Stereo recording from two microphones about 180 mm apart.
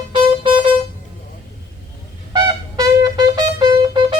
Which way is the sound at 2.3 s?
20° right (ahead or behind).